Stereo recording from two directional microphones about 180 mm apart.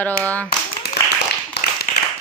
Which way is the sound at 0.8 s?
60° left (ahead or behind).